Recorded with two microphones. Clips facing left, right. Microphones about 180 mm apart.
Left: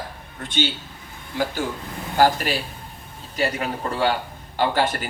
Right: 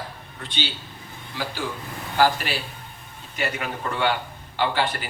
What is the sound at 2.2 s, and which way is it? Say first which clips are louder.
A man's voice: left 2 dB; 45° left (ahead or behind).